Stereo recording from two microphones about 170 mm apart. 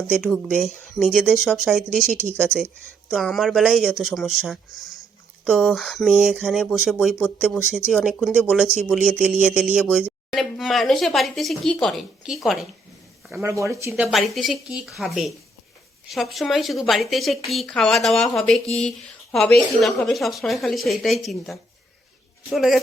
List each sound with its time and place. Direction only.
0.2 s speech: 5° right (ahead or behind)
2.3 s speech: 10° left (ahead or behind)
3.1 s speech: centre (ahead or behind)
13.3 s speech: 15° right (ahead or behind)
13.9 s speech: centre (ahead or behind)